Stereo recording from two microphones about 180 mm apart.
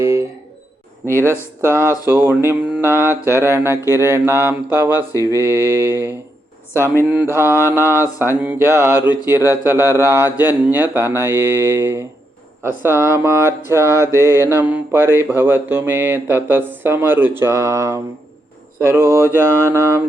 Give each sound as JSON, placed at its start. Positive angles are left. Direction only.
{"t": 0.0, "sound": "a sound", "side_deg": -15}
{"t": 1.0, "sound": "speech", "side_deg": -15}
{"t": 6.7, "sound": "speech", "side_deg": 15}
{"t": 7.6, "sound": "speech", "side_deg": -15}
{"t": 14.3, "sound": "speech", "side_deg": 15}
{"t": 14.6, "sound": "speech", "side_deg": -10}